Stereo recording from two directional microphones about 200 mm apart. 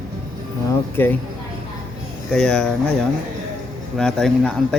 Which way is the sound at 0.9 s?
10° left (ahead or behind).